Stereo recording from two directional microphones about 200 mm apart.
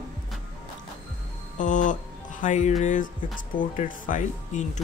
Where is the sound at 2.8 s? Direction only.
40° left (ahead or behind).